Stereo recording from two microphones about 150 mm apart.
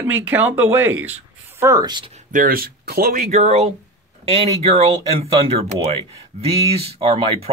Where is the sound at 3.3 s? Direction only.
50° right (ahead or behind).